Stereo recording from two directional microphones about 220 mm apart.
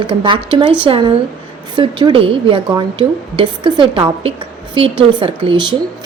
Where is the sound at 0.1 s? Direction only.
20° right (ahead or behind).